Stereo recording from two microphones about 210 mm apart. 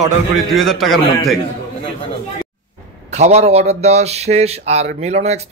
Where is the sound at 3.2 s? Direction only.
30° right (ahead or behind).